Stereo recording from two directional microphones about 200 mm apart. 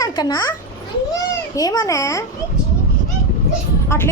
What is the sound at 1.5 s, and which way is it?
Speech, 15° left (ahead or behind).